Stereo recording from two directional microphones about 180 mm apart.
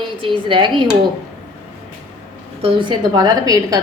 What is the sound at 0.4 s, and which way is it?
Speech, 25° right (ahead or behind).